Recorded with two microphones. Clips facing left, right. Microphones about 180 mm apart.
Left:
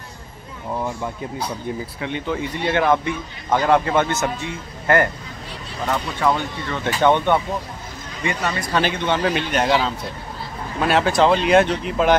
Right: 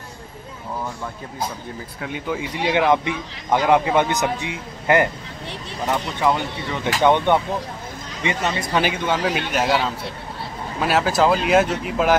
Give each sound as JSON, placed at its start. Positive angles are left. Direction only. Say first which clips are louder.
{"t": 2.0, "sound": "speech", "louder": "right 1 dB", "side_deg": -5}
{"t": 8.8, "sound": "speech", "louder": "left 1 dB", "side_deg": -5}